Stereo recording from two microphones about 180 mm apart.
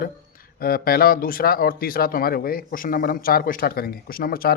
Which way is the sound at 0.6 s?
55° left (ahead or behind).